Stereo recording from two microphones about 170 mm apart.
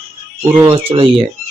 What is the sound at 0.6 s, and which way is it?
Speech, 30° right (ahead or behind).